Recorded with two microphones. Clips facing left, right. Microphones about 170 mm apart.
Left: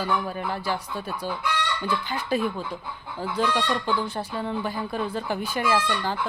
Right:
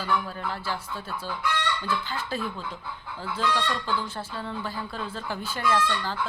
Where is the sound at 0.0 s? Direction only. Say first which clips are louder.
Left 2 dB; 15° left (ahead or behind).